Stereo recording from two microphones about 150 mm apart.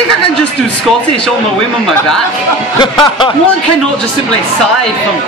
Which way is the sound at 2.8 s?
30° left (ahead or behind).